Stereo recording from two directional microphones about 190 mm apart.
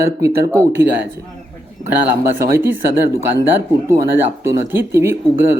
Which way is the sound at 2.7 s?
10° right (ahead or behind).